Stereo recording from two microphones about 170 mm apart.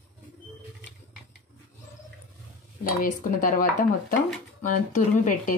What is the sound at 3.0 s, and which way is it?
Speech, 50° left (ahead or behind).